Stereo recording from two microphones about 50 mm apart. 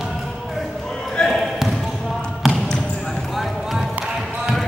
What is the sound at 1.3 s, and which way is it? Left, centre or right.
Basketball bounce, centre.